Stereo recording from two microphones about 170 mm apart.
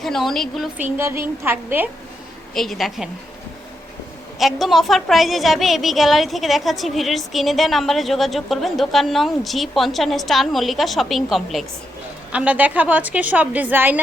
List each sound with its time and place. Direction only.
0.0 s a woman's voice: centre (ahead or behind)
0.8 s a woman's voice: 15° right (ahead or behind)
2.6 s a woman's voice: centre (ahead or behind)
4.6 s a woman's voice: centre (ahead or behind)